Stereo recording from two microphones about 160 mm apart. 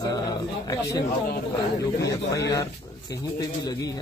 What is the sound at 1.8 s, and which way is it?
A man's voice, 20° left (ahead or behind).